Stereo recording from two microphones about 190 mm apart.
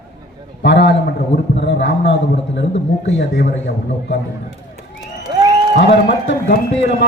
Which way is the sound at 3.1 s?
60° left (ahead or behind).